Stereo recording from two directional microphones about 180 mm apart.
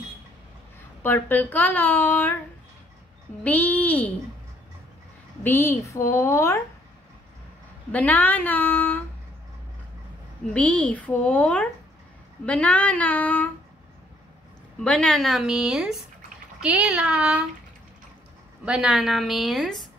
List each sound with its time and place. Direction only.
1.0 s speech: 10° left (ahead or behind)
3.4 s speech: 10° left (ahead or behind)
5.4 s speech: 15° left (ahead or behind)
7.9 s speech: 10° left (ahead or behind)
10.5 s speech: 10° left (ahead or behind)
14.8 s a woman's voice: 5° left (ahead or behind)
18.7 s a woman's voice: 5° right (ahead or behind)